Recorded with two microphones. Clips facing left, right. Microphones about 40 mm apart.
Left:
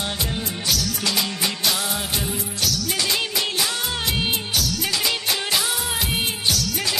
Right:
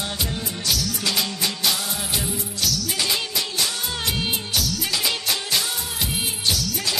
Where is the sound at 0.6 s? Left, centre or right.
Centre.